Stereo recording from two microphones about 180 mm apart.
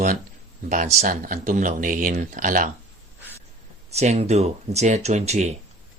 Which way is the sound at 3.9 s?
35° right (ahead or behind).